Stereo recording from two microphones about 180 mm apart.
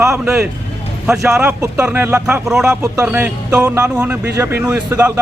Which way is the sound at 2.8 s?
15° right (ahead or behind).